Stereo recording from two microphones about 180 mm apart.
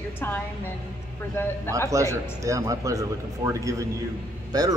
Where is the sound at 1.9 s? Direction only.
15° right (ahead or behind).